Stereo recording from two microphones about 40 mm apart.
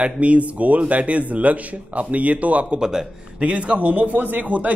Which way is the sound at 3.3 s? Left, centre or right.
Right.